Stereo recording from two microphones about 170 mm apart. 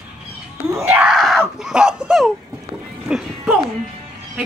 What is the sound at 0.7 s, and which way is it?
Screaming, 15° right (ahead or behind).